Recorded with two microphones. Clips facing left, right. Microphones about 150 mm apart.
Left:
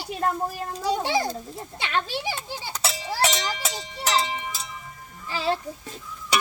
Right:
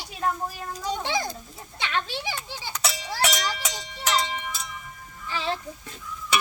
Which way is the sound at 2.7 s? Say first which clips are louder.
Left 1 dB; 30° left (ahead or behind).